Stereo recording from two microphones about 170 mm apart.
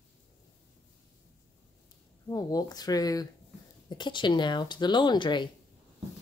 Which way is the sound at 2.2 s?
20° left (ahead or behind).